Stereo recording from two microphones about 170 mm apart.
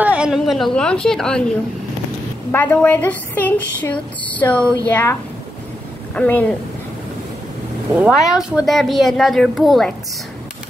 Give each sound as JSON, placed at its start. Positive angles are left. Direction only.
{"t": 0.0, "sound": "a woman's voice", "side_deg": -5}
{"t": 2.5, "sound": "speech", "side_deg": 10}
{"t": 6.1, "sound": "speech", "side_deg": 10}
{"t": 7.9, "sound": "a woman's voice", "side_deg": -5}